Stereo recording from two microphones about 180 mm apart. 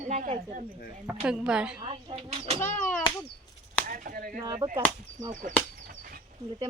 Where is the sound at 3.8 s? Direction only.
50° right (ahead or behind).